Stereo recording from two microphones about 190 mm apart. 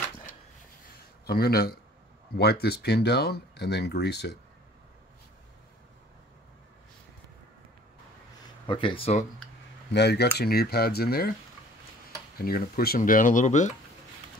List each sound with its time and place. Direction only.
1.2 s speech: 55° left (ahead or behind)
8.6 s speech: 25° left (ahead or behind)
9.9 s speech: 60° left (ahead or behind)
12.4 s speech: 50° left (ahead or behind)